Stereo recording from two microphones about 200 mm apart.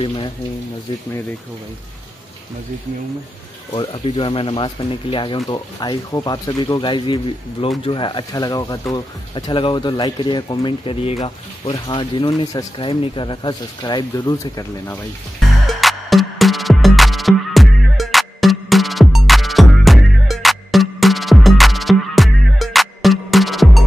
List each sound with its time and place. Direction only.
0.0 s speech: 25° left (ahead or behind)
3.7 s speech: 25° left (ahead or behind)
15.6 s music: centre (ahead or behind)